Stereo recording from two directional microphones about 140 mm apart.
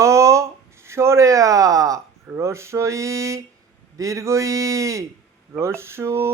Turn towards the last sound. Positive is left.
turn(degrees=-20)  # may be behind; listen again after turning